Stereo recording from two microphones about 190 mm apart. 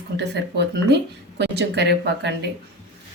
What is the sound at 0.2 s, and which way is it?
Speech, 65° right (ahead or behind).